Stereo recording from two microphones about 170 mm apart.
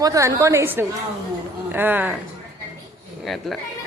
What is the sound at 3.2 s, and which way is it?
Speech, centre (ahead or behind).